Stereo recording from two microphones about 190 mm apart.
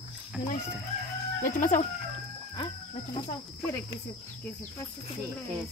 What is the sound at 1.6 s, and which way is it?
Speech, 40° left (ahead or behind).